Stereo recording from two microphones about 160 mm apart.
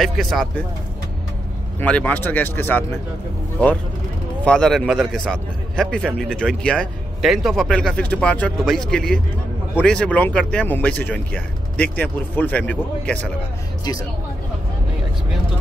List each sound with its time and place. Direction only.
0.0 s a man's voice: centre (ahead or behind)
1.8 s speech: 10° left (ahead or behind)
4.5 s a man's voice: 5° left (ahead or behind)